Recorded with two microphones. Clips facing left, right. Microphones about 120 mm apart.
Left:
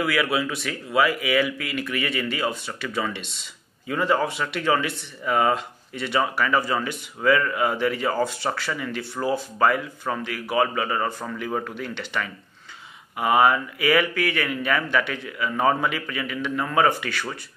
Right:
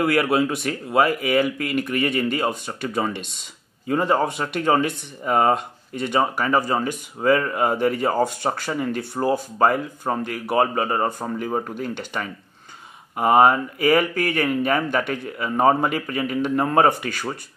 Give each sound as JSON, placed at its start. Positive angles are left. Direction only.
{"t": 0.0, "sound": "speech", "side_deg": -45}